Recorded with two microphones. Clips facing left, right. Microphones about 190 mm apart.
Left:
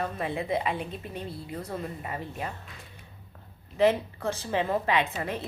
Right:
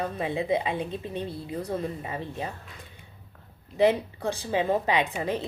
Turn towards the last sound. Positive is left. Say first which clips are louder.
# right 2 dB
turn(degrees=-15)  # may be behind; listen again after turning